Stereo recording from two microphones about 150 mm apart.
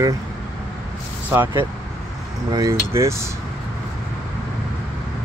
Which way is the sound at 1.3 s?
15° right (ahead or behind).